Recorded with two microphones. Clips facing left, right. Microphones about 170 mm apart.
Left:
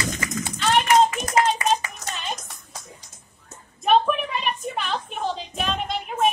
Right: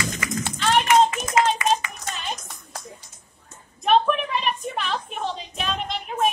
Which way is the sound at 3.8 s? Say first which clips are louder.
Even; centre (ahead or behind).